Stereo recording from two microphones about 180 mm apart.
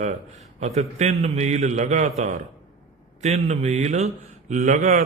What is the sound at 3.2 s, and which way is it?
A man's voice, 40° right (ahead or behind).